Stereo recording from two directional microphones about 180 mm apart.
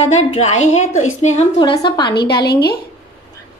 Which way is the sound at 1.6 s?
25° left (ahead or behind).